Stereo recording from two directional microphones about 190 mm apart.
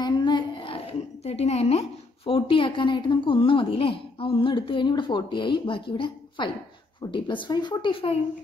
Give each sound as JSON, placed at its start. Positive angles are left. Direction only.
{"t": 0.0, "sound": "a woman's voice", "side_deg": 25}